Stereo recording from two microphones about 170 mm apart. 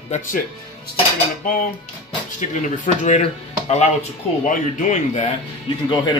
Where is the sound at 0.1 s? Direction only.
40° left (ahead or behind).